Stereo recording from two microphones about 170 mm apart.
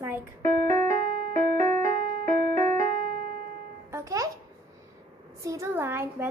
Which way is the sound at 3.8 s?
15° right (ahead or behind).